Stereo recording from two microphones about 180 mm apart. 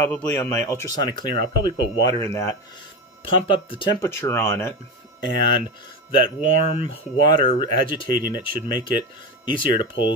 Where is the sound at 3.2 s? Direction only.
30° left (ahead or behind).